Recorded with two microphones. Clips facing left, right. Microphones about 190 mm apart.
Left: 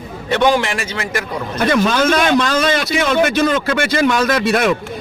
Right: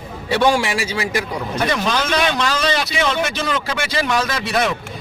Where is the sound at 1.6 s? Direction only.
50° left (ahead or behind).